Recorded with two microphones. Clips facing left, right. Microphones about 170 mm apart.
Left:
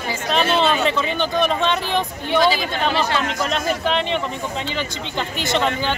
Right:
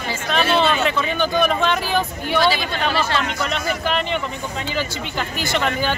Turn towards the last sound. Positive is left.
turn(degrees=25)  # may be behind; listen again after turning